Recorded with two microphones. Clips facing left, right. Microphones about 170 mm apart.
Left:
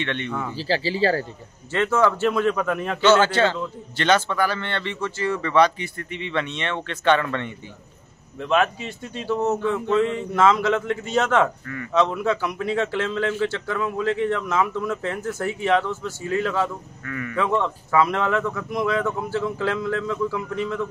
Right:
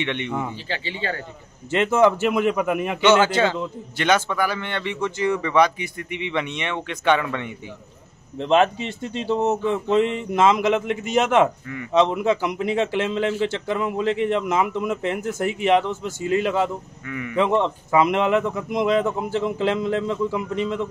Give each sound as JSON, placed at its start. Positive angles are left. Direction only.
{"t": 0.0, "sound": "a man's voice", "side_deg": -15}
{"t": 0.6, "sound": "speech", "side_deg": 35}
{"t": 1.7, "sound": "a man's voice", "side_deg": -20}
{"t": 8.4, "sound": "speech", "side_deg": -25}